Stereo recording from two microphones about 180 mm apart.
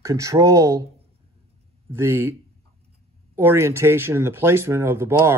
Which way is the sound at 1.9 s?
15° right (ahead or behind).